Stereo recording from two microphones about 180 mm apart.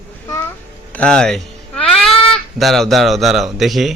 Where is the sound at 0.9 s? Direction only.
5° left (ahead or behind).